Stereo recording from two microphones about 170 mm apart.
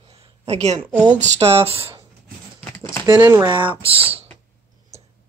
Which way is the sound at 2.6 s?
15° left (ahead or behind).